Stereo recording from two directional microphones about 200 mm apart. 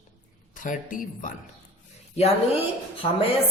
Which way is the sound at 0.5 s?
40° left (ahead or behind).